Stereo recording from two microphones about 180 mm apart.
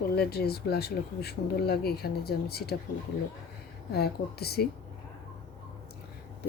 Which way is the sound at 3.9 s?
60° left (ahead or behind).